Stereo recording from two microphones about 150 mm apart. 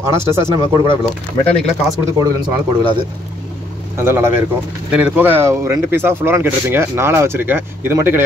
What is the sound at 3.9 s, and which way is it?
Speech, 15° right (ahead or behind).